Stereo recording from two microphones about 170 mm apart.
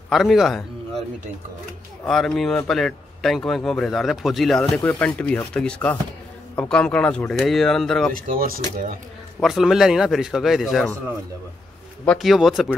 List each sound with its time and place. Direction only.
0.1 s a man's voice: centre (ahead or behind)
2.0 s a man's voice: centre (ahead or behind)
8.1 s speech: 55° right (ahead or behind)
9.4 s a man's voice: centre (ahead or behind)
12.0 s a man's voice: 5° left (ahead or behind)